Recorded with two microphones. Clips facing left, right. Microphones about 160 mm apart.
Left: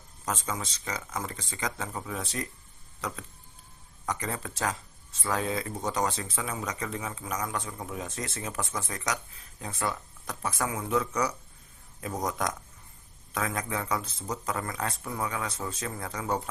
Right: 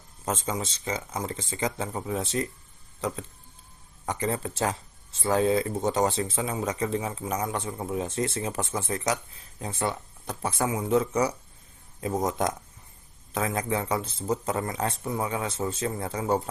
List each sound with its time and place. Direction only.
0.3 s speech: 25° right (ahead or behind)